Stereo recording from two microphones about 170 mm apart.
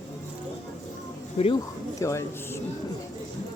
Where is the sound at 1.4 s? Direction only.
35° left (ahead or behind).